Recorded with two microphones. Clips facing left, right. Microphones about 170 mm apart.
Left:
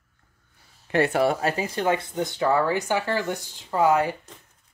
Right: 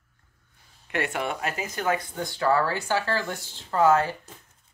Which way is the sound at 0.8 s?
35° left (ahead or behind).